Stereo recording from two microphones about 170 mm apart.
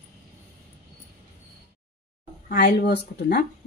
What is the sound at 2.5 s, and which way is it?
Speech, 60° left (ahead or behind).